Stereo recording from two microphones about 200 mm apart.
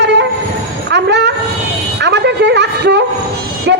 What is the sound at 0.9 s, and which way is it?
Speech, 60° right (ahead or behind).